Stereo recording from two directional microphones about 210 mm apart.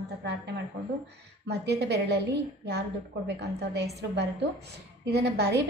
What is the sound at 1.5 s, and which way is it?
A woman's voice, 50° right (ahead or behind).